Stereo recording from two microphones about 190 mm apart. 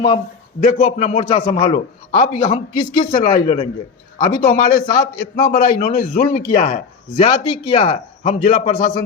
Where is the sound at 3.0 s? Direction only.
45° left (ahead or behind).